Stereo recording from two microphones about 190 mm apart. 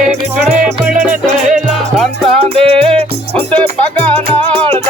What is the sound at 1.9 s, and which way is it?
Music, centre (ahead or behind).